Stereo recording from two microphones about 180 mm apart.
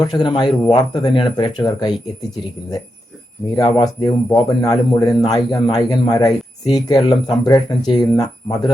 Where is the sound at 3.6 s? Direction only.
25° left (ahead or behind).